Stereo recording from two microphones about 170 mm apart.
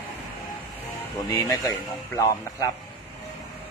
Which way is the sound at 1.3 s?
20° left (ahead or behind).